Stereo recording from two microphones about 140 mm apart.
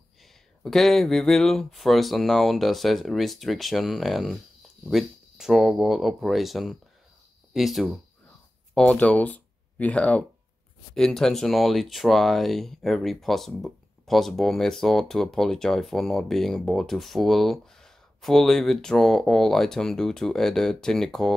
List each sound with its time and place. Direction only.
0.2 s speech: centre (ahead or behind)